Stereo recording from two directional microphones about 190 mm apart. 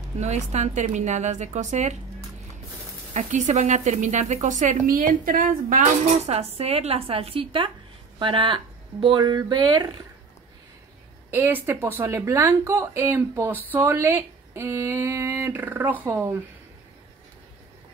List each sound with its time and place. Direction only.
0.2 s a woman's voice: 35° right (ahead or behind)
3.1 s a woman's voice: 40° right (ahead or behind)
6.2 s a woman's voice: 35° right (ahead or behind)
11.2 s speech: 10° right (ahead or behind)